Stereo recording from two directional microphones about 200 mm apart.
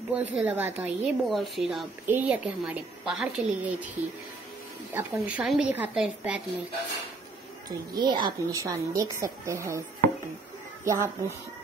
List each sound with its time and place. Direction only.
0.1 s a woman's voice: 5° right (ahead or behind)
4.9 s a woman's voice: 5° right (ahead or behind)
7.9 s a woman's voice: 20° right (ahead or behind)
10.9 s a woman's voice: 15° right (ahead or behind)